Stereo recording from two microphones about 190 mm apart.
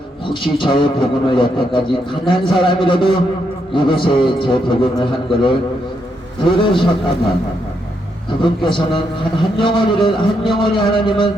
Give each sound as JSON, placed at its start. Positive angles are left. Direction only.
{"t": 0.4, "sound": "a man's voice", "side_deg": 25}
{"t": 8.4, "sound": "a man's voice", "side_deg": 25}